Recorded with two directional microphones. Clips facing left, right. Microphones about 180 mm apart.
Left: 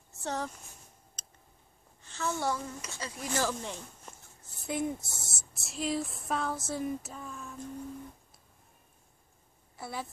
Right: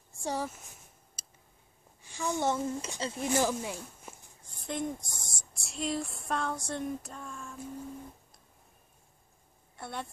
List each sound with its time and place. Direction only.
0.1 s speech: 10° right (ahead or behind)
1.2 s a sound: 10° right (ahead or behind)
2.0 s speech: 15° right (ahead or behind)
4.5 s speech: 5° left (ahead or behind)
9.8 s speech: 5° left (ahead or behind)